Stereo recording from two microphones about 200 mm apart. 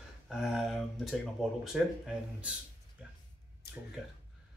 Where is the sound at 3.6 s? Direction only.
55° left (ahead or behind).